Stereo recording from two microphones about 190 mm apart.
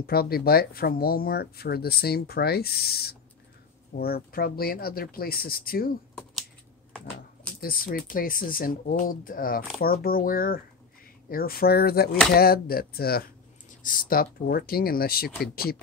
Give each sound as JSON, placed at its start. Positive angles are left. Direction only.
{"t": 0.0, "sound": "speech", "side_deg": 55}
{"t": 7.6, "sound": "speech", "side_deg": 50}